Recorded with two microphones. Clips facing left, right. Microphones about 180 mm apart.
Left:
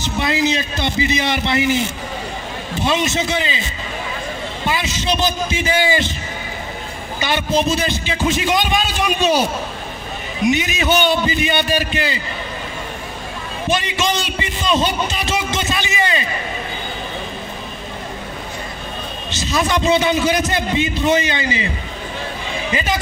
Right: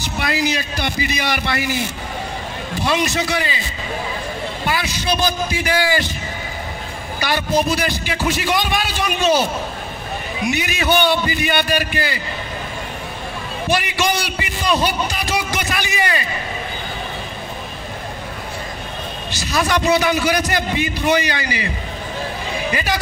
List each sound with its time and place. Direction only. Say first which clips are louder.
0.0 s a man's voice: left 2 dB; 20° left (ahead or behind)
4.6 s a man's voice: left 1 dB; 20° left (ahead or behind)
7.2 s a man's voice: even; 20° left (ahead or behind)
10.5 s a man's voice: even; 20° left (ahead or behind)
13.7 s a man's voice: even; 20° left (ahead or behind)
19.3 s a man's voice: left 1 dB; 20° left (ahead or behind)
22.7 s speech: left 1 dB; 20° left (ahead or behind)